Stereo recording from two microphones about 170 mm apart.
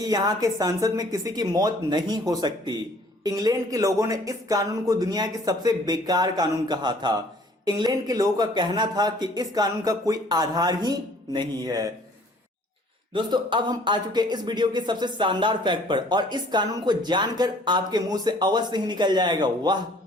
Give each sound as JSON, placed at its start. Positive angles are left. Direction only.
{"t": 0.0, "sound": "speech", "side_deg": -20}
{"t": 13.1, "sound": "speech", "side_deg": -25}